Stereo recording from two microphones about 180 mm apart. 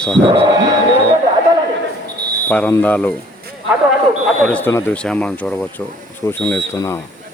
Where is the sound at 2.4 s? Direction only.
10° left (ahead or behind).